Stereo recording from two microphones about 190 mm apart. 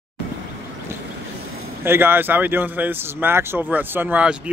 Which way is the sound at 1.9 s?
10° right (ahead or behind).